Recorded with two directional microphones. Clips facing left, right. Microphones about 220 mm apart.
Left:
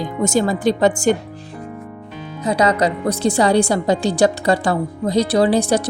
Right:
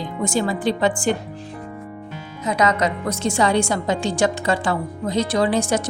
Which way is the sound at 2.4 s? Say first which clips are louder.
Left 3 dB; 30° left (ahead or behind).